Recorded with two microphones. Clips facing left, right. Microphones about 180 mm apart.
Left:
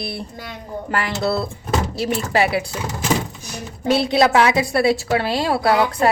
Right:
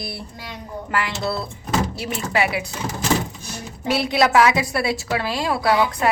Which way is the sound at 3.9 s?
25° left (ahead or behind).